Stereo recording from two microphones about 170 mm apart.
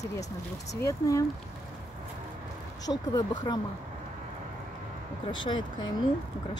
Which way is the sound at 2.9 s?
20° left (ahead or behind).